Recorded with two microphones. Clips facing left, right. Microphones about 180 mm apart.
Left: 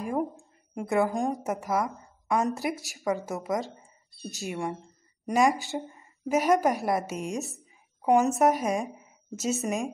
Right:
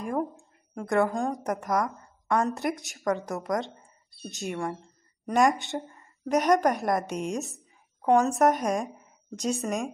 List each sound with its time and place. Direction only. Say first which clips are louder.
0.8 s speech: right 1 dB; centre (ahead or behind)
1.1 s speech: left 1 dB; 20° left (ahead or behind)
1.4 s a woman's voice: right 1 dB; 5° left (ahead or behind)
8.1 s speech: even; 15° left (ahead or behind)
8.4 s a woman's voice: even; centre (ahead or behind)